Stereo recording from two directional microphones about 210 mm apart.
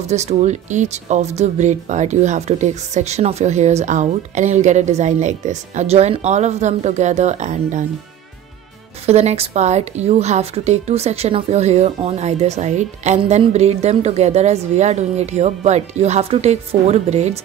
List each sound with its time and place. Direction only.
0.0 s a woman's voice: 30° right (ahead or behind)
9.0 s a woman's voice: 30° right (ahead or behind)